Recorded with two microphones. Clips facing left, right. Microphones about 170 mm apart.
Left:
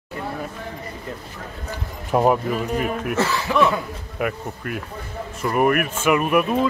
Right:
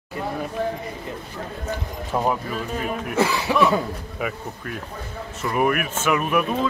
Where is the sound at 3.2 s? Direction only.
15° right (ahead or behind).